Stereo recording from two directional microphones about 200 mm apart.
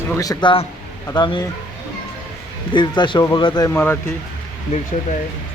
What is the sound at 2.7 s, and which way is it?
Speech, 20° left (ahead or behind).